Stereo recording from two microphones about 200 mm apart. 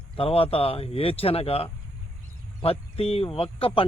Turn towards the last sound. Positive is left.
turn(degrees=30)  # may be behind; listen again after turning